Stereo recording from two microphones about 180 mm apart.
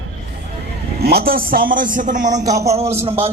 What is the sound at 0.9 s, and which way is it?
A man's voice, 60° right (ahead or behind).